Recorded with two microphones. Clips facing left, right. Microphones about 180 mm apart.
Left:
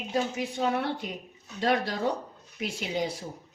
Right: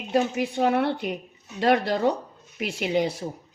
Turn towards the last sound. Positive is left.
turn(degrees=-65)  # may be behind; listen again after turning